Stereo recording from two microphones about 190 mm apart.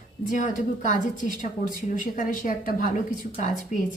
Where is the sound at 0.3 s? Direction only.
40° left (ahead or behind).